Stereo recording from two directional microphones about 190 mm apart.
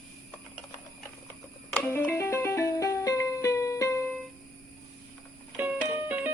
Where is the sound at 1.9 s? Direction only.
15° left (ahead or behind).